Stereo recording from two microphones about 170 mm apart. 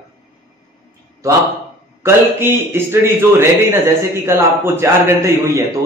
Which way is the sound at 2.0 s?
15° right (ahead or behind).